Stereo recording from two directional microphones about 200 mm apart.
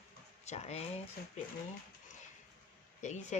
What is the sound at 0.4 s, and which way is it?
Speech, 35° left (ahead or behind).